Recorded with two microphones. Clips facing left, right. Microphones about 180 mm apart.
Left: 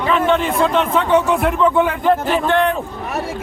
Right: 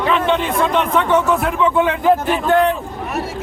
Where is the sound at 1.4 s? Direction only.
5° right (ahead or behind).